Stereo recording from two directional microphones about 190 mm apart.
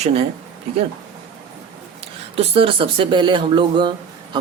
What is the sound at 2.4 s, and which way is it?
Speech, 30° right (ahead or behind).